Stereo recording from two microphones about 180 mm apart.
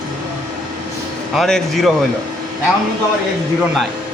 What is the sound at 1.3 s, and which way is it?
Speech, centre (ahead or behind).